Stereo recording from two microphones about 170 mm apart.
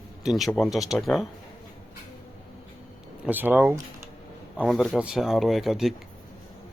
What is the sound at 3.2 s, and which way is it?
Speech, 10° right (ahead or behind).